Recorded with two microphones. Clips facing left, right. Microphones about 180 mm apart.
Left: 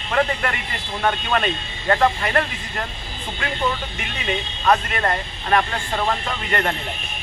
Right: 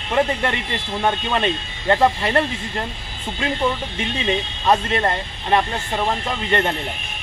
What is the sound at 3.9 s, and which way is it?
Speech, 25° right (ahead or behind).